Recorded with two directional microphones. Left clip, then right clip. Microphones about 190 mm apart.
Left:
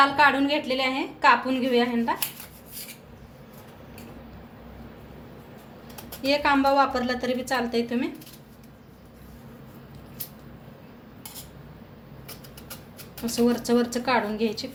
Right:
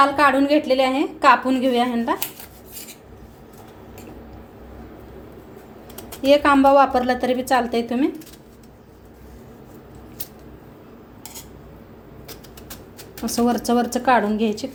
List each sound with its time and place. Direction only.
0.0 s a woman's voice: 45° right (ahead or behind)
6.2 s a woman's voice: 40° right (ahead or behind)
13.3 s a woman's voice: 45° right (ahead or behind)